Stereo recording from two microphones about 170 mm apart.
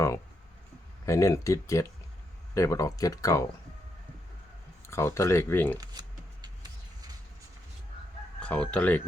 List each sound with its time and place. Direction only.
1.0 s speech: 15° left (ahead or behind)
4.9 s speech: 15° left (ahead or behind)
5.7 s shuffling cards: 25° right (ahead or behind)
8.4 s speech: 5° left (ahead or behind)